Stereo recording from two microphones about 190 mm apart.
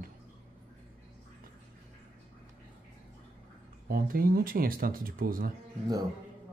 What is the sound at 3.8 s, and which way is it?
Speech, 50° right (ahead or behind).